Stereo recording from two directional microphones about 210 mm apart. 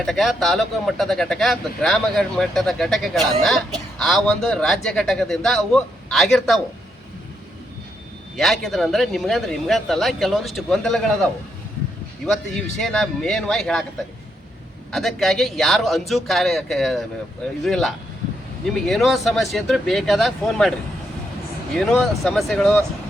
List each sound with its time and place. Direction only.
0.0 s speech: centre (ahead or behind)
8.4 s speech: centre (ahead or behind)
14.9 s speech: centre (ahead or behind)
21.8 s speech: centre (ahead or behind)